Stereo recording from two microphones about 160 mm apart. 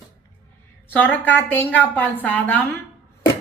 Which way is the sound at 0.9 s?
10° left (ahead or behind).